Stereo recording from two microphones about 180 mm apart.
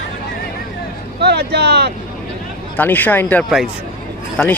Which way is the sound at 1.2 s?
65° right (ahead or behind).